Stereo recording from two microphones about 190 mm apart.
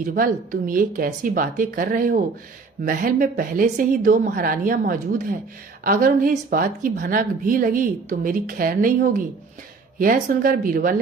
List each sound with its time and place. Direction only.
0.0 s a woman's voice: 45° right (ahead or behind)